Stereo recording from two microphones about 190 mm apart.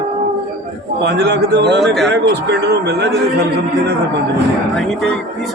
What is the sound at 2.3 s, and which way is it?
Speech, 60° right (ahead or behind).